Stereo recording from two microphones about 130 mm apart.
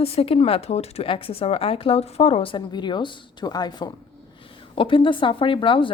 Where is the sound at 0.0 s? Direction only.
50° left (ahead or behind).